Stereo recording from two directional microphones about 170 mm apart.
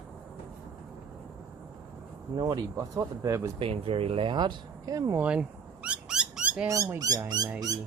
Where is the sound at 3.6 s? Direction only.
35° right (ahead or behind).